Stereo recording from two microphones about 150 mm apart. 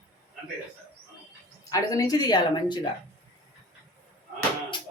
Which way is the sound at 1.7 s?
25° left (ahead or behind).